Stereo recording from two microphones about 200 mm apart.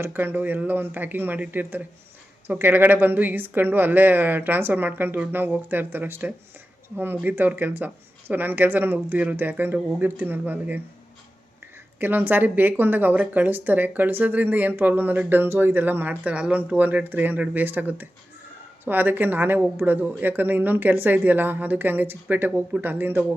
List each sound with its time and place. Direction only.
0.0 s a woman's voice: 10° right (ahead or behind)
11.9 s a woman's voice: 10° right (ahead or behind)